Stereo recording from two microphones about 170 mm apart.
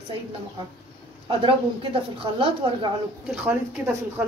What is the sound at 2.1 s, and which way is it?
Speech, 30° right (ahead or behind).